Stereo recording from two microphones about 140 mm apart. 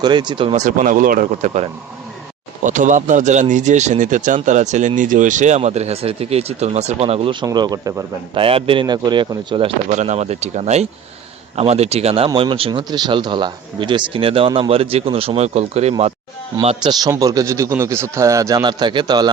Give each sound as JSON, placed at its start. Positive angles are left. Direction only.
{"t": 0.0, "sound": "speech", "side_deg": -30}
{"t": 0.5, "sound": "speech", "side_deg": -60}
{"t": 2.6, "sound": "speech", "side_deg": -65}
{"t": 7.4, "sound": "speech", "side_deg": -30}
{"t": 8.4, "sound": "speech", "side_deg": -40}
{"t": 9.9, "sound": "speech", "side_deg": -55}
{"t": 16.8, "sound": "speech", "side_deg": -30}